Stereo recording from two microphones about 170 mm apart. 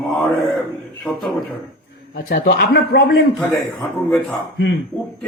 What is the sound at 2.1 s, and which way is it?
Speech, 65° left (ahead or behind).